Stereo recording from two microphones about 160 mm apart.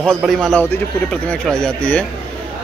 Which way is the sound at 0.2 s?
Centre (ahead or behind).